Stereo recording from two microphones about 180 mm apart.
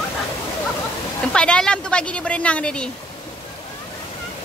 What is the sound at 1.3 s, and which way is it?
A woman's voice, 5° left (ahead or behind).